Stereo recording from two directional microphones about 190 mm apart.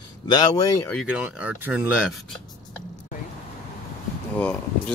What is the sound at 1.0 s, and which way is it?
Speech, 5° right (ahead or behind).